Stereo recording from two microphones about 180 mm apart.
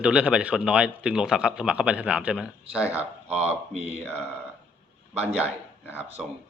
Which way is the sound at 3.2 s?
35° right (ahead or behind).